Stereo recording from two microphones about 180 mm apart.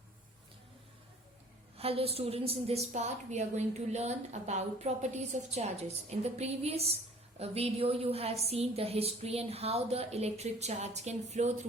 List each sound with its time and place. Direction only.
1.8 s a woman's voice: 35° right (ahead or behind)